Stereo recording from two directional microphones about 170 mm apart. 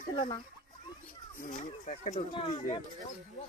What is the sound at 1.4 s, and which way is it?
Speech, 50° left (ahead or behind).